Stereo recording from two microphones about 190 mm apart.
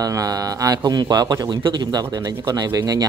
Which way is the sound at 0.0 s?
20° right (ahead or behind).